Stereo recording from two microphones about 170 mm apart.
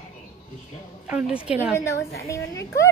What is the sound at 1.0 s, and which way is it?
Speech, 5° right (ahead or behind).